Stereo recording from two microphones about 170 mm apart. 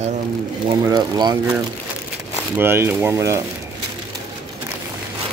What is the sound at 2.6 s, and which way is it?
Speech, 15° right (ahead or behind).